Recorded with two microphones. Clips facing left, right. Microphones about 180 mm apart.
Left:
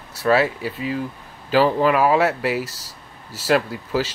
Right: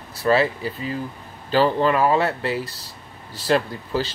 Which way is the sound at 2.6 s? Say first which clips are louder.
Right 1 dB; 90° left.